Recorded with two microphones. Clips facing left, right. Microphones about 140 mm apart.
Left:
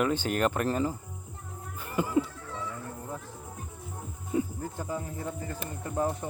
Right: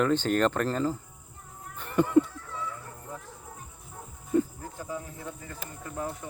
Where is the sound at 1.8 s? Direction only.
5° left (ahead or behind).